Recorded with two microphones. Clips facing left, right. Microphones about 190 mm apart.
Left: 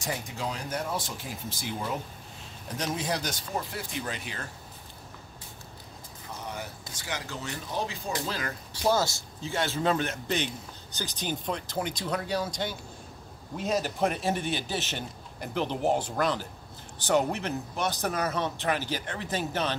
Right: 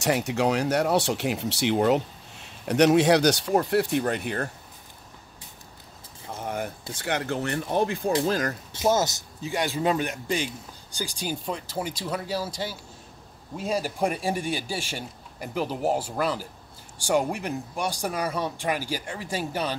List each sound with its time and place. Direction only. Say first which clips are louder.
0.0 s speech: right 10 dB; 75° right (ahead or behind); by 4.5 s 55° right (ahead or behind)
6.4 s a sound: right 8 dB; 55° right (ahead or behind)
7.0 s speech: right 9 dB; 60° right (ahead or behind)
8.3 s speech: right 8 dB; 45° right (ahead or behind)
8.8 s a man's voice: right 3 dB; 20° right (ahead or behind)